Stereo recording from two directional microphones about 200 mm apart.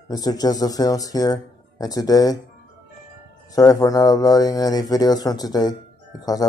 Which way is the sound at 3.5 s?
20° left (ahead or behind).